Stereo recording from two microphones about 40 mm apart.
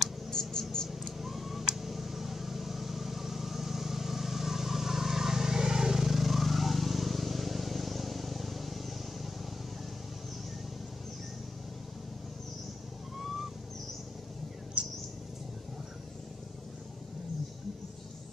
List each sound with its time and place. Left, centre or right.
0.3 s mouse: centre
0.8 s a sound: centre
1.8 s vehicle: centre
14.8 s bird: right